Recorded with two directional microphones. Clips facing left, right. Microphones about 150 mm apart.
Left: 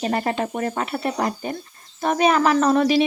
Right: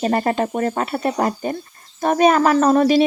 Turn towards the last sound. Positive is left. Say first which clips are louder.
# right 3 dB
turn(degrees=-45)  # may be behind; listen again after turning